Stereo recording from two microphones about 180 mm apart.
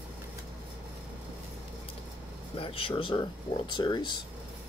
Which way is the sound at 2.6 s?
30° left (ahead or behind).